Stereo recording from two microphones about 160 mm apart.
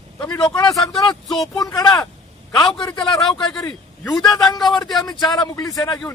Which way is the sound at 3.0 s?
Centre (ahead or behind).